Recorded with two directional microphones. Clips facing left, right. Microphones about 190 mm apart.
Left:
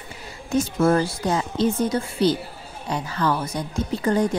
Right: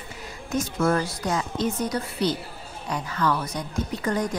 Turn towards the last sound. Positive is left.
turn(degrees=30)  # may be behind; listen again after turning